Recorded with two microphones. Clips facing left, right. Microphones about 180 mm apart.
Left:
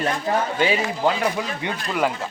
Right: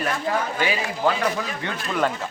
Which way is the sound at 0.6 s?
25° left (ahead or behind).